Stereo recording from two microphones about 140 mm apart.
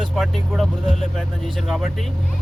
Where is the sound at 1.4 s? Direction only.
Centre (ahead or behind).